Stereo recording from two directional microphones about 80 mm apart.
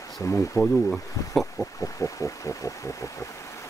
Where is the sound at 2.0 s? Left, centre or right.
Left.